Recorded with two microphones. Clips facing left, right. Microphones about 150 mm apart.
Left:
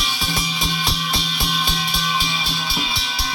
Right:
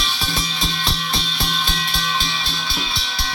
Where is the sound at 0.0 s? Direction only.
10° left (ahead or behind).